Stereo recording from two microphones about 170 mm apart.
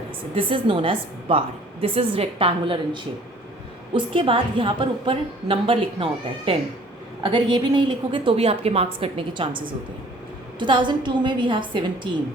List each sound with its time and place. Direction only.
0.3 s a woman's voice: 30° right (ahead or behind)